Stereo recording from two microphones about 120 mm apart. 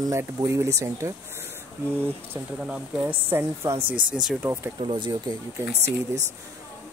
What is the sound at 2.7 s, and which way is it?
Speech, 15° right (ahead or behind).